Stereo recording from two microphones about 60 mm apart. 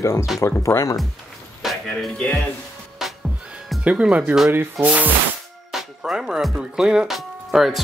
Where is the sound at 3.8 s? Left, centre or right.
Centre.